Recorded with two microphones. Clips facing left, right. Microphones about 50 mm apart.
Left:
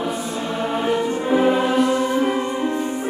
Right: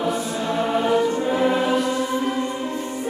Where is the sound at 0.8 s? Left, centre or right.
Centre.